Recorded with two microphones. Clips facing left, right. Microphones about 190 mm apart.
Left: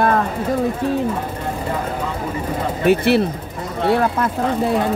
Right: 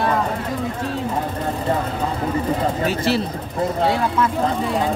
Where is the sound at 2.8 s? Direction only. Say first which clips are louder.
Left 6 dB; 60° left (ahead or behind).